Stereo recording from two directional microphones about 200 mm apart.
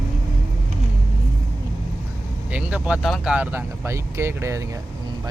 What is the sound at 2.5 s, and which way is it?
Speech, 5° right (ahead or behind).